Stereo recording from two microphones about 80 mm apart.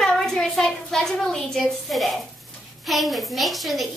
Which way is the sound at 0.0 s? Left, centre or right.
Centre.